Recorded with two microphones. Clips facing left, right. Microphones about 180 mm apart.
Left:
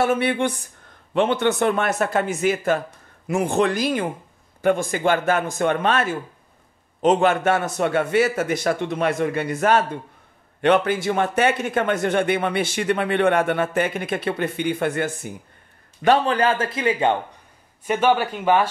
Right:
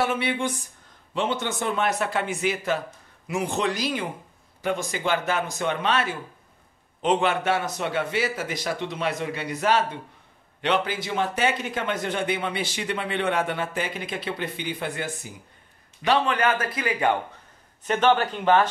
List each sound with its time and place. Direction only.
0.0 s speech: 50° left (ahead or behind)
16.3 s speech: 30° left (ahead or behind)
17.8 s speech: 10° left (ahead or behind)